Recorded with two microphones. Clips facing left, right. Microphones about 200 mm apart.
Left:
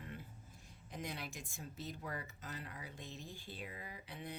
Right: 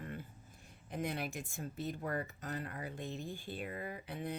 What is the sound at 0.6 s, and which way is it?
Speech, 60° right (ahead or behind).